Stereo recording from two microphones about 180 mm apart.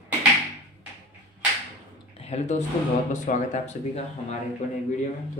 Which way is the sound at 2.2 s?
40° left (ahead or behind).